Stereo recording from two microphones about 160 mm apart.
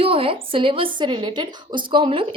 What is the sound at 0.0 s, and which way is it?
A woman's voice, 35° right (ahead or behind).